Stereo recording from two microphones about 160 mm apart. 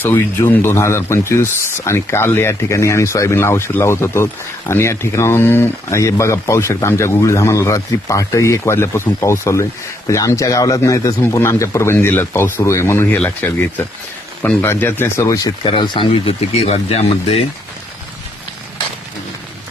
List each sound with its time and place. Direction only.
0.0 s speech: 15° left (ahead or behind)
15.6 s speech: 35° left (ahead or behind)